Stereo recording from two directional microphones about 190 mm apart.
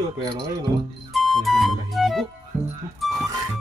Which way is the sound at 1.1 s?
Centre (ahead or behind).